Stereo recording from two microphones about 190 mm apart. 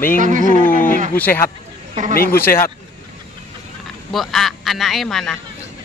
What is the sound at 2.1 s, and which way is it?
Mantra, 50° left (ahead or behind).